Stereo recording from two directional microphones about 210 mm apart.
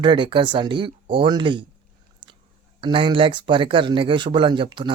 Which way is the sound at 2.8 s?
25° right (ahead or behind).